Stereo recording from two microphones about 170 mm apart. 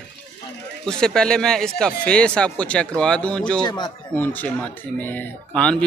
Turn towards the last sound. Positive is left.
turn(degrees=5)  # may be behind; listen again after turning